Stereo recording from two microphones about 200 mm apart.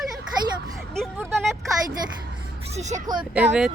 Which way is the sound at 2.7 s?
35° right (ahead or behind).